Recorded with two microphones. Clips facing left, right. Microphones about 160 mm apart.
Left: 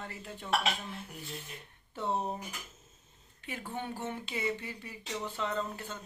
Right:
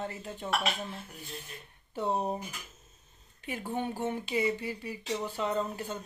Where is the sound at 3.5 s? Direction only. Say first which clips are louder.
Right 5 dB; 15° right (ahead or behind).